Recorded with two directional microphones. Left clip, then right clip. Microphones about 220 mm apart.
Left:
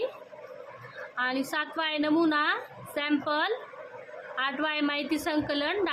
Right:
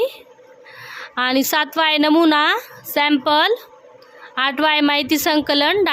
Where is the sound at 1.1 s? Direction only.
50° right (ahead or behind).